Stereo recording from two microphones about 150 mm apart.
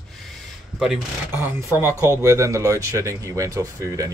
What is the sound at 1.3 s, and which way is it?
Speech, 15° right (ahead or behind).